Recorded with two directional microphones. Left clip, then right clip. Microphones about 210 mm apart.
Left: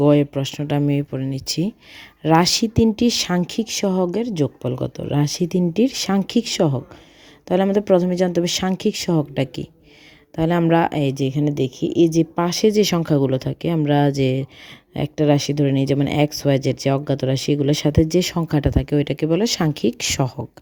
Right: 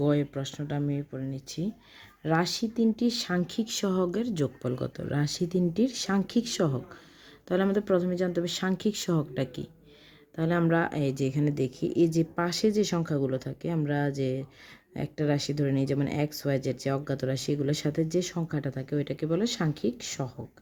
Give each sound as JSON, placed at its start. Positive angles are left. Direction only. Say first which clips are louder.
{"t": 0.0, "sound": "speech", "louder": "left 11 dB", "side_deg": 30}
{"t": 12.2, "sound": "speech", "louder": "left 9 dB", "side_deg": 25}